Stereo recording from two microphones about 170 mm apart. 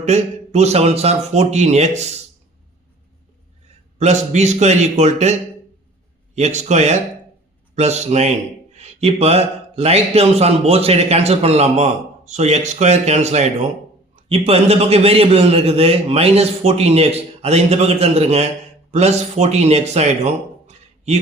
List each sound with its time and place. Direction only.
0.0 s speech: 40° right (ahead or behind)
3.9 s speech: 40° right (ahead or behind)